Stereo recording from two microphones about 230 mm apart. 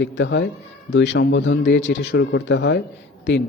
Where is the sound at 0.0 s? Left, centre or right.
Left.